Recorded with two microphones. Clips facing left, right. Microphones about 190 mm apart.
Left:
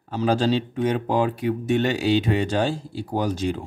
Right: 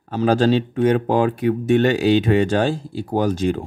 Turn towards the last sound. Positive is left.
turn(degrees=-50)  # may be behind; listen again after turning